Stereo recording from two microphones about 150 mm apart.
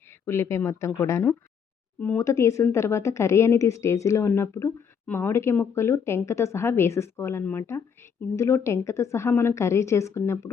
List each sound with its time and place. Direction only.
0.1 s speech: 15° left (ahead or behind)